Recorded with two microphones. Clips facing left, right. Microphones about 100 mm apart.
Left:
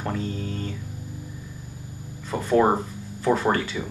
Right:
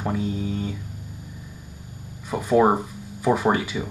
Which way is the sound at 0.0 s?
10° right (ahead or behind).